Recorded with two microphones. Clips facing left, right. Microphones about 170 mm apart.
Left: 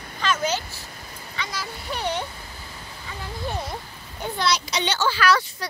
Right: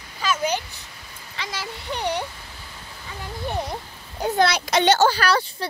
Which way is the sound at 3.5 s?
15° right (ahead or behind).